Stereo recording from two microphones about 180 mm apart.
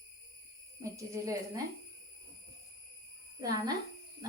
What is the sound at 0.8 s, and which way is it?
Speech, 20° right (ahead or behind).